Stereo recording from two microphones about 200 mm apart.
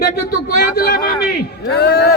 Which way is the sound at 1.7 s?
55° left (ahead or behind).